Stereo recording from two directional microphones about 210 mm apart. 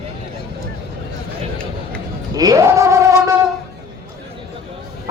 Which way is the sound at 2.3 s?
20° right (ahead or behind).